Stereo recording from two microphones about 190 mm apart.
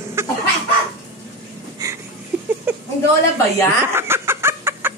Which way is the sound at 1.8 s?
20° right (ahead or behind).